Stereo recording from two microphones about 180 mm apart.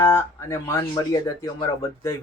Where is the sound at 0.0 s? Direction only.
15° left (ahead or behind).